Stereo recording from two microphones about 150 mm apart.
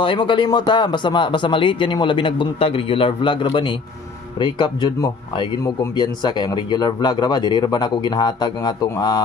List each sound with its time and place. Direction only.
0.0 s speech: 35° left (ahead or behind)